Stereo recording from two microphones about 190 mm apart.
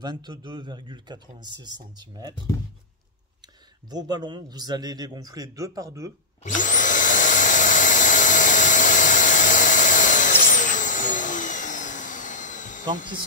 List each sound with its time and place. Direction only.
0.0 s speech: 25° right (ahead or behind)
3.9 s speech: 20° right (ahead or behind)
6.4 s vacuum cleaner: 40° left (ahead or behind)